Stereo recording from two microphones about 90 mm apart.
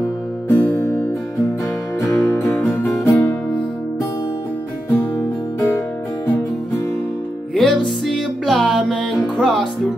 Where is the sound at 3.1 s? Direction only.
20° left (ahead or behind).